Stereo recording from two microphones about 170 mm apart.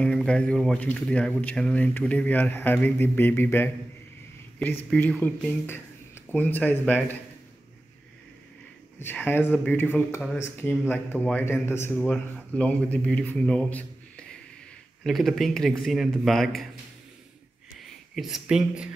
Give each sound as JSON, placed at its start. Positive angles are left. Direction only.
{"t": 0.0, "sound": "speech", "side_deg": 5}
{"t": 4.9, "sound": "speech", "side_deg": 10}
{"t": 9.0, "sound": "a man's voice", "side_deg": 10}
{"t": 18.1, "sound": "a man's voice", "side_deg": 0}